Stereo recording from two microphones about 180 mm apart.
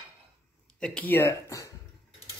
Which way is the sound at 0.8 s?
5° left (ahead or behind).